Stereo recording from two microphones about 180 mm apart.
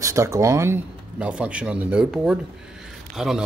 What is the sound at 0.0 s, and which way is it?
Speech, 15° right (ahead or behind).